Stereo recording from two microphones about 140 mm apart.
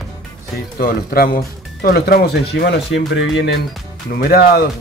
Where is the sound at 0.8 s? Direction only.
90° left.